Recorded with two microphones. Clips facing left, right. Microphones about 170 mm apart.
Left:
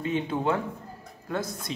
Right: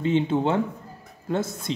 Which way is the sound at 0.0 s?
25° right (ahead or behind).